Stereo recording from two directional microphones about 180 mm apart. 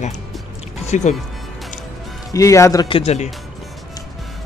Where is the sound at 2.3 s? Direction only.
15° left (ahead or behind).